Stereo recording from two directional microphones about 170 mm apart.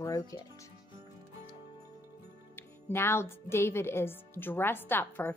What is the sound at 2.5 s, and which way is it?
A woman's voice, 15° left (ahead or behind).